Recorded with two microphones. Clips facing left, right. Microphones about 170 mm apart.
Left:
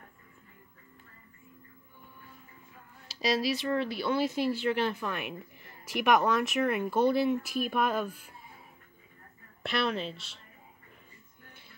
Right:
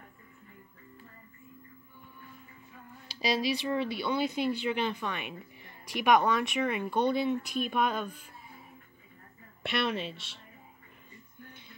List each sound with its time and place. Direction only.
3.1 s speech: centre (ahead or behind)
9.6 s speech: centre (ahead or behind)